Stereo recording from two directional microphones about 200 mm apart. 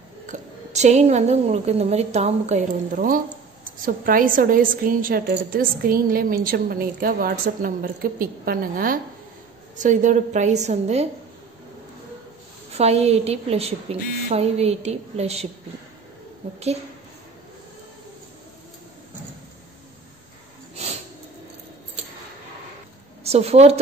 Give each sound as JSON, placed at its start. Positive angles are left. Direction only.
{"t": 0.3, "sound": "a woman's voice", "side_deg": -35}
{"t": 12.7, "sound": "a woman's voice", "side_deg": -30}
{"t": 23.2, "sound": "speech", "side_deg": -30}